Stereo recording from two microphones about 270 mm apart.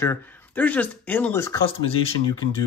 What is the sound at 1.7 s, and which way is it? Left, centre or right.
Speech, left.